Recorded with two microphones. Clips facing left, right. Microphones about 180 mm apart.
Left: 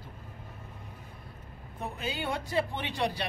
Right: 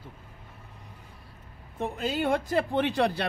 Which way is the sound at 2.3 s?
50° right (ahead or behind).